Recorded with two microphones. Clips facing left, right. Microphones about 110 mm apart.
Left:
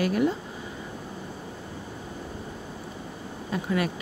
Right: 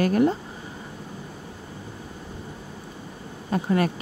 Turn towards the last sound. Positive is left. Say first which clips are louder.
# right 4 dB
turn(degrees=-45)  # may be behind; listen again after turning